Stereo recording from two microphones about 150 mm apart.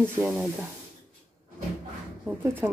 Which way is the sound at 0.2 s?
5° right (ahead or behind).